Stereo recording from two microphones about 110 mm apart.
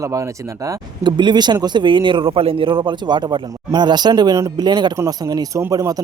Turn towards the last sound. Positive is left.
turn(degrees=-30)  # may be behind; listen again after turning